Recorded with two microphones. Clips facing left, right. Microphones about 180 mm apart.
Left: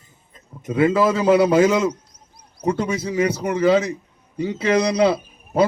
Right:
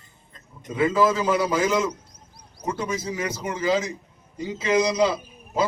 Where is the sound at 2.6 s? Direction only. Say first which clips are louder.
Left 6 dB; 60° left (ahead or behind).